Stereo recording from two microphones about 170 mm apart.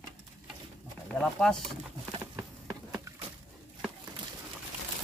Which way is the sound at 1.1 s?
5° left (ahead or behind).